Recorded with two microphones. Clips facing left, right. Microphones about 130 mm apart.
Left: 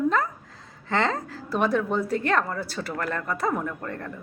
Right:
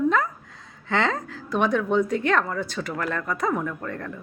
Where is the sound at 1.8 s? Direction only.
5° left (ahead or behind).